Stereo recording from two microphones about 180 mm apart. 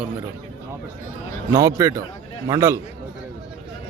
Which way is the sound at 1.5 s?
20° right (ahead or behind).